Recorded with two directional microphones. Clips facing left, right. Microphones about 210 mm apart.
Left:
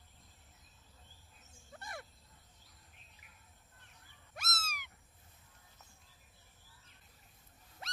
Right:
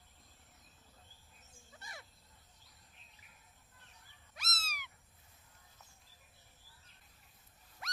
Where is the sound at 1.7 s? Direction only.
55° left (ahead or behind).